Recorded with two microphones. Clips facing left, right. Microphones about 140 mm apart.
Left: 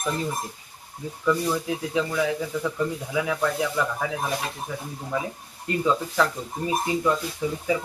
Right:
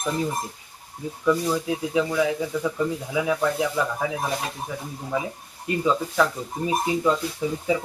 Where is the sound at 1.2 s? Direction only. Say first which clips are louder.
Right 2 dB; 10° right (ahead or behind).